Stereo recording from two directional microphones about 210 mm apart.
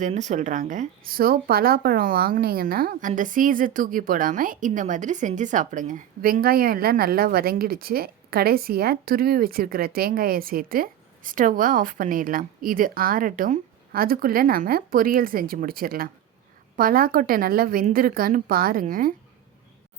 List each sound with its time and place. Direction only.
0.0 s speech: 35° right (ahead or behind)